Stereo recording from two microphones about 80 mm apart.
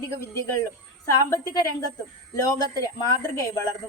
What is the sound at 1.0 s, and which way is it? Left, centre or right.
A woman's voice, left.